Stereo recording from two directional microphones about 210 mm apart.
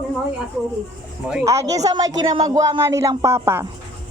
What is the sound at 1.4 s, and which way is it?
Speech, 15° right (ahead or behind).